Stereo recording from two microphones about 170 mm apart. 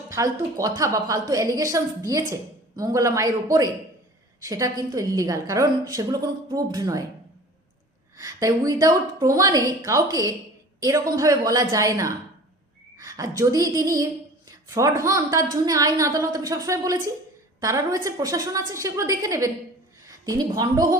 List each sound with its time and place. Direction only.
0.1 s a woman's voice: 20° right (ahead or behind)
8.1 s a woman's voice: 20° right (ahead or behind)